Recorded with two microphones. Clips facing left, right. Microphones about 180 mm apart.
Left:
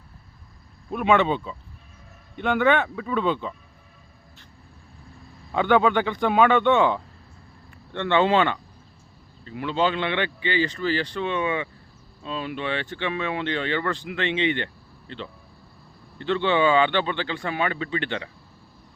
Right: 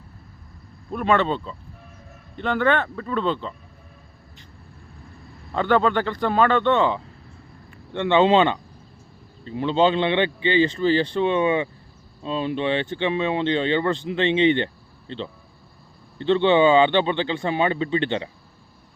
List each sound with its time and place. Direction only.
0.9 s speech: 5° left (ahead or behind)
5.5 s a man's voice: 5° left (ahead or behind)
7.9 s speech: 15° right (ahead or behind)